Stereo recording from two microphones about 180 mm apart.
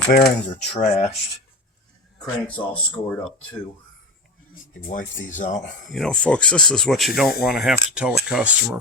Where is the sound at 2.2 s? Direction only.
5° left (ahead or behind).